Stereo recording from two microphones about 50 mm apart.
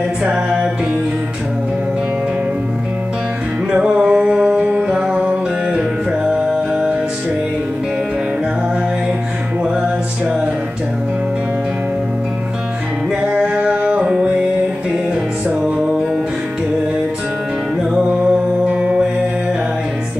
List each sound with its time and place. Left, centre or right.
0.2 s music: right
3.7 s music: right
6.2 s music: centre
13.3 s music: centre
18.2 s music: right